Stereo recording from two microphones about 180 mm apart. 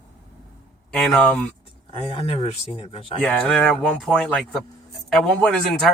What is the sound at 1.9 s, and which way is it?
Speech, 30° left (ahead or behind).